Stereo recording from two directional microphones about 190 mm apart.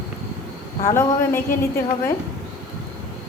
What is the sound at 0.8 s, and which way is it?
Speech, 15° left (ahead or behind).